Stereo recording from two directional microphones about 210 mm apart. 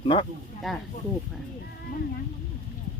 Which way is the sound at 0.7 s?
Centre (ahead or behind).